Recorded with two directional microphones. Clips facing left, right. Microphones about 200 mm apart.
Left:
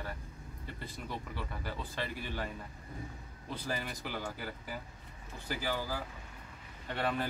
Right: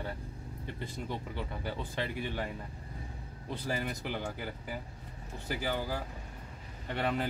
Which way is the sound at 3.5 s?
15° right (ahead or behind).